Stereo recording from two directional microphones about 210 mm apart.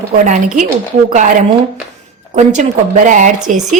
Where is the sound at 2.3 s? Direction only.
35° right (ahead or behind).